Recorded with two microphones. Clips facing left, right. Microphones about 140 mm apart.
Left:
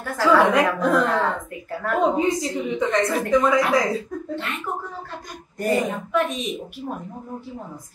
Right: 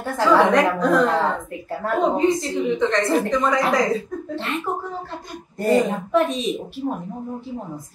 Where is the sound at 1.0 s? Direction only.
25° right (ahead or behind).